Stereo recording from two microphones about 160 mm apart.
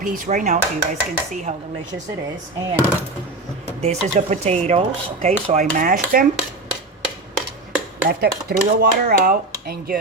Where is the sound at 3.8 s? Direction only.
45° right (ahead or behind); by 6.3 s 60° right (ahead or behind).